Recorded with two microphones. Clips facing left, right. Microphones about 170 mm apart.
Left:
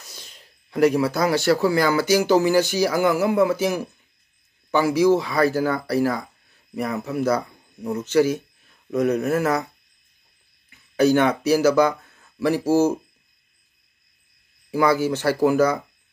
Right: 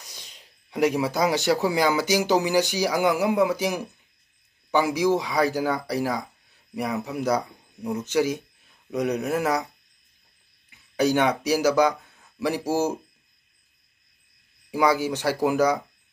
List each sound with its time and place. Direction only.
0.0 s a sound: 15° right (ahead or behind)
1.8 s speech: 15° right (ahead or behind)
10.7 s speech: 15° right (ahead or behind)
14.7 s speech: 15° right (ahead or behind)